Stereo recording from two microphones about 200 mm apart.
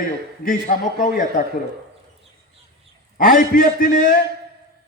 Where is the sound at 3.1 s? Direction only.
45° left (ahead or behind).